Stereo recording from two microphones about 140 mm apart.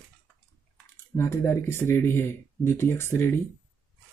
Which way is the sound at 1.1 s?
20° left (ahead or behind).